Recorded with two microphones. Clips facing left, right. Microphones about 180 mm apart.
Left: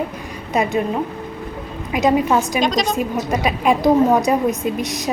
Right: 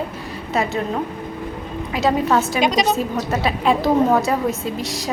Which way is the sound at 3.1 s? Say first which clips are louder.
Left 1 dB; 15° left (ahead or behind).